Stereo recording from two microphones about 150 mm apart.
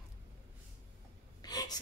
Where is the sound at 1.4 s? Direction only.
25° left (ahead or behind).